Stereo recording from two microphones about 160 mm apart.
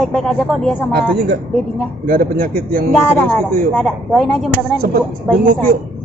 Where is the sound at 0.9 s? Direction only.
75° right (ahead or behind).